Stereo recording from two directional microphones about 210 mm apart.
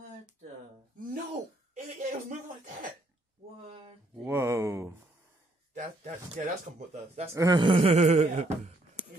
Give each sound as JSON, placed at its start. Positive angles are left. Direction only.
{"t": 2.0, "sound": "throat clearing", "side_deg": -40}
{"t": 4.2, "sound": "a sound", "side_deg": -15}
{"t": 5.8, "sound": "speech", "side_deg": -35}
{"t": 7.3, "sound": "speech", "side_deg": -20}